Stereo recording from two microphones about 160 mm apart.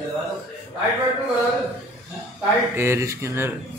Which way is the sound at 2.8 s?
15° right (ahead or behind).